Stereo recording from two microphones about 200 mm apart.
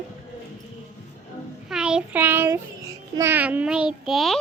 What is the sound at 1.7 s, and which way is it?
A child's voice, 5° right (ahead or behind).